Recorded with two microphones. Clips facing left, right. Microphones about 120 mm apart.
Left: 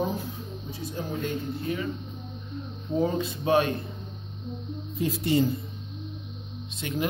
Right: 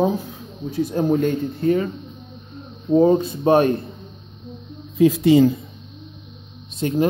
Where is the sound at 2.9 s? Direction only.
35° right (ahead or behind).